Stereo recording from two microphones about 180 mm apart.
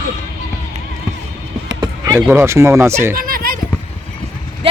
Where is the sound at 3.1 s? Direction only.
55° right (ahead or behind).